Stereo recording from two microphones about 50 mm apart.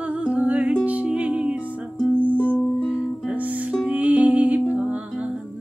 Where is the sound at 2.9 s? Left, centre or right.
Right.